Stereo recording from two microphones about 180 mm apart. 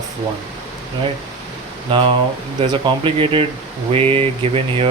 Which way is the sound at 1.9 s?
30° right (ahead or behind).